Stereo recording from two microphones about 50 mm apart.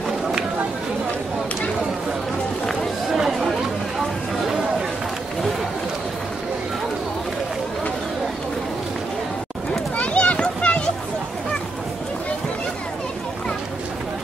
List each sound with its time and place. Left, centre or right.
3.2 s chatter: centre
9.9 s children playing: left